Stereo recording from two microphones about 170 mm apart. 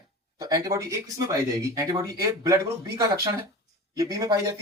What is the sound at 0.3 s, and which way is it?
Speech, 20° right (ahead or behind).